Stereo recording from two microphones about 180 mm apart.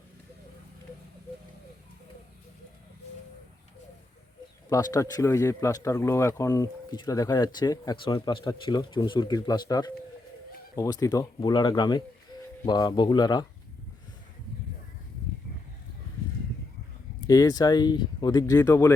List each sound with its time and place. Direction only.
4.7 s speech: 20° left (ahead or behind)
17.2 s speech: 20° left (ahead or behind)